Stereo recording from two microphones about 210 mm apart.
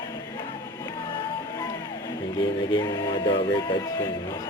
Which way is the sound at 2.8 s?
20° left (ahead or behind).